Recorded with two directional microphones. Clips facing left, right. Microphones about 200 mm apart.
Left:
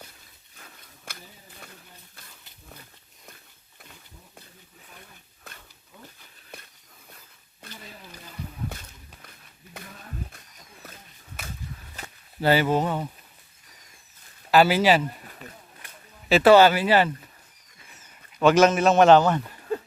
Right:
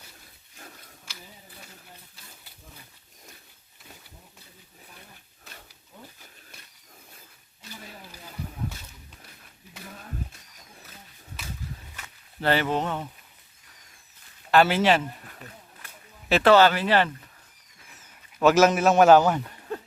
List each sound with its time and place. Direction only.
1.1 s a sound: 55° left (ahead or behind)
7.6 s wild animals: 55° left (ahead or behind)
12.4 s speech: 5° left (ahead or behind)
14.5 s a man's voice: 5° left (ahead or behind)
16.3 s speech: 10° left (ahead or behind)
18.3 s a man's voice: 5° right (ahead or behind)